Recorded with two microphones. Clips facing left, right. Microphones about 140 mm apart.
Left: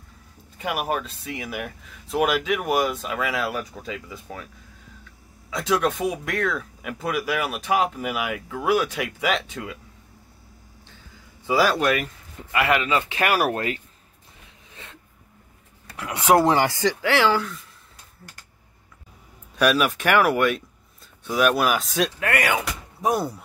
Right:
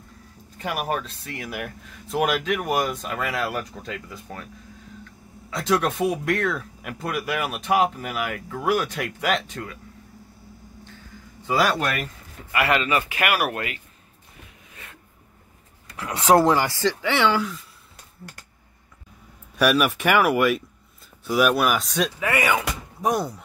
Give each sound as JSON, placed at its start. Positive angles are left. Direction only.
{"t": 0.6, "sound": "speech", "side_deg": 0}
{"t": 5.5, "sound": "speech", "side_deg": 0}
{"t": 11.4, "sound": "speech", "side_deg": 0}
{"t": 12.5, "sound": "speech", "side_deg": 15}
{"t": 13.2, "sound": "speech", "side_deg": 30}
{"t": 16.4, "sound": "speech", "side_deg": 20}
{"t": 17.0, "sound": "speech", "side_deg": 0}
{"t": 19.6, "sound": "speech", "side_deg": 0}